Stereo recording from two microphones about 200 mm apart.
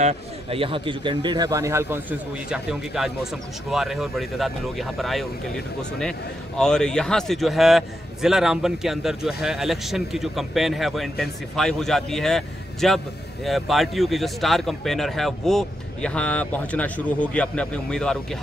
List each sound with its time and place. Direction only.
0.0 s a man's voice: 30° right (ahead or behind); by 5.2 s centre (ahead or behind)
6.6 s a man's voice: 5° left (ahead or behind)